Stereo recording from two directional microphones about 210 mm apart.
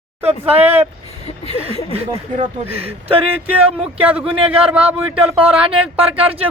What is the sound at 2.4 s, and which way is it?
Speech, 30° right (ahead or behind).